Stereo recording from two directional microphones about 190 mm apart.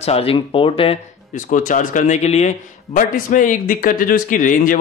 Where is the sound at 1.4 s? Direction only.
45° left (ahead or behind).